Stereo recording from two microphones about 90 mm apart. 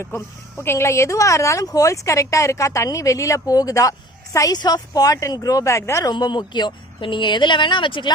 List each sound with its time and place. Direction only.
0.0 s speech: 25° left (ahead or behind)
4.5 s speech: 50° left (ahead or behind)
6.1 s speech: 55° left (ahead or behind)